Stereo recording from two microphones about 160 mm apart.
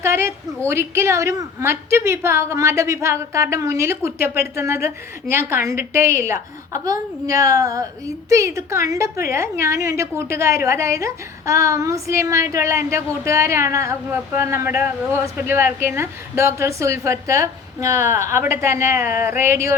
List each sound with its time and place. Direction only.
0.0 s a woman's voice: 15° right (ahead or behind)